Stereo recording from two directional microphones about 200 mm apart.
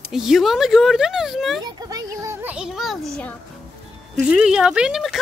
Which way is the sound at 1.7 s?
20° right (ahead or behind).